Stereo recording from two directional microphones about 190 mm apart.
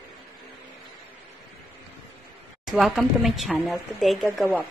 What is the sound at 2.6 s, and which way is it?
A woman's voice, centre (ahead or behind).